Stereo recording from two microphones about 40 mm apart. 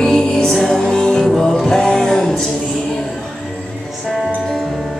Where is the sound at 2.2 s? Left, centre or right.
Centre.